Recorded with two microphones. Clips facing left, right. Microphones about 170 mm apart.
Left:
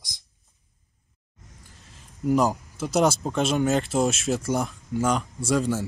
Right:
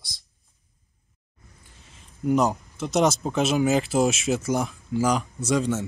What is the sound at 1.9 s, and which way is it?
Speech, centre (ahead or behind).